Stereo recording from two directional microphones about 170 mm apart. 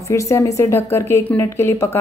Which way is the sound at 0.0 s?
15° left (ahead or behind).